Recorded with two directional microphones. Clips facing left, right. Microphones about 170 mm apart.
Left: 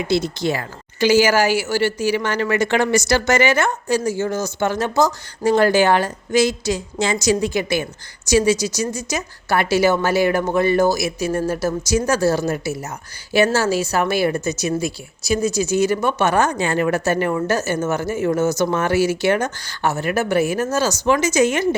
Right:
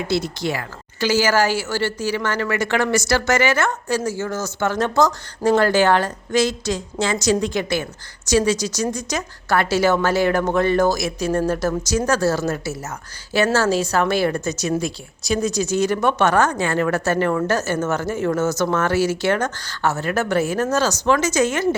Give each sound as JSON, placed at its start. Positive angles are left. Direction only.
{"t": 0.1, "sound": "a woman's voice", "side_deg": 20}